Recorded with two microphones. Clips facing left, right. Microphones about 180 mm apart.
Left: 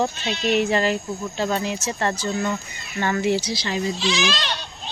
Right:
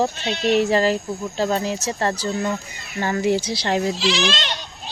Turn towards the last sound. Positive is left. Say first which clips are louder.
# right 1 dB
turn(degrees=-20)  # may be behind; listen again after turning